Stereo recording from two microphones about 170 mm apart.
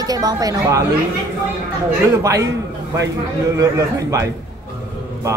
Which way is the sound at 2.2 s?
20° right (ahead or behind).